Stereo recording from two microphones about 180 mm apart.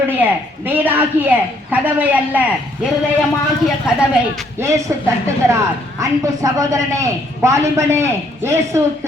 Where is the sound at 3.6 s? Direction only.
5° right (ahead or behind).